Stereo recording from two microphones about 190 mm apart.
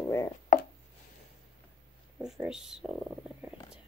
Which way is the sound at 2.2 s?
5° right (ahead or behind).